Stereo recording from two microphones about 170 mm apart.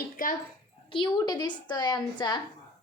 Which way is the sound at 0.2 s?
55° left (ahead or behind).